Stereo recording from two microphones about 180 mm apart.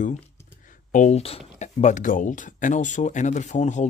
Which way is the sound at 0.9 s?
40° left (ahead or behind).